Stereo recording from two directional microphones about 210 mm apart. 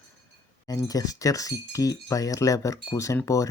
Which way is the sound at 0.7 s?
15° left (ahead or behind).